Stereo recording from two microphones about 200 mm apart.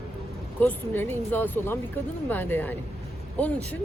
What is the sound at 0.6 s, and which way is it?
Speech, 10° left (ahead or behind).